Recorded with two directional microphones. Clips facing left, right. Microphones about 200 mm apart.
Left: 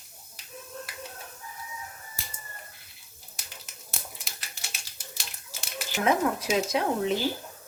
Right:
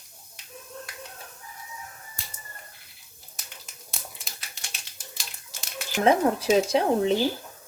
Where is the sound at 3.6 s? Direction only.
5° left (ahead or behind).